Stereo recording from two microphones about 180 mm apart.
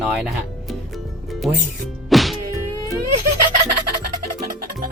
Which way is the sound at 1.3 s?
Centre (ahead or behind).